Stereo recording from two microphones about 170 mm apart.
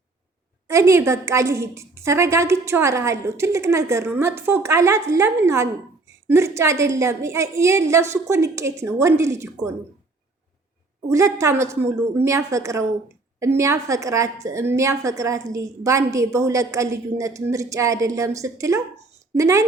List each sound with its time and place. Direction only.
0.7 s a woman's voice: 15° right (ahead or behind)
11.1 s a woman's voice: 20° right (ahead or behind)